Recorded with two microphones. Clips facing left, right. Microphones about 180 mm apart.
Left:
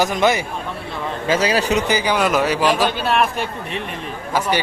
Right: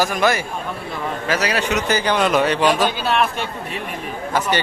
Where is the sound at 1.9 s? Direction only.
10° left (ahead or behind).